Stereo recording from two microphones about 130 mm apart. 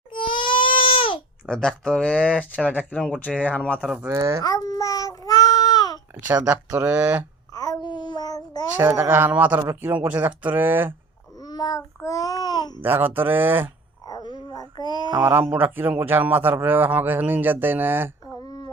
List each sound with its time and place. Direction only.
0.1 s crying: 40° left (ahead or behind)
1.5 s speech: 5° left (ahead or behind)
3.8 s a man's voice: 10° right (ahead or behind)
4.1 s a man's voice: 25° right (ahead or behind)
4.4 s child singing: 30° left (ahead or behind)
6.1 s a man's voice: 15° right (ahead or behind)
7.5 s child singing: 30° left (ahead or behind)
8.7 s a man's voice: 15° right (ahead or behind)
11.3 s babbling: 30° left (ahead or behind)
11.9 s a child's voice: 25° left (ahead or behind)
12.8 s a man's voice: 15° right (ahead or behind)
14.1 s a sound: 35° left (ahead or behind)
15.1 s a man's voice: 15° right (ahead or behind)
18.3 s a sound: 30° left (ahead or behind)